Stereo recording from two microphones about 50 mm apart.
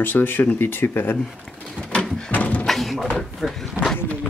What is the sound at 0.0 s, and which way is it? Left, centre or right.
Speech, left.